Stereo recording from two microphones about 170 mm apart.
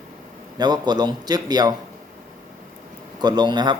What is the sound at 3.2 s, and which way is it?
Speech, 25° right (ahead or behind).